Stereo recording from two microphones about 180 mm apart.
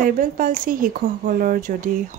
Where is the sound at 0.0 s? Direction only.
50° right (ahead or behind).